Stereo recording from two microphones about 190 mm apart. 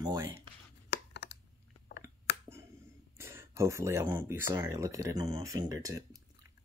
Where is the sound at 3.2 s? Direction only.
15° right (ahead or behind).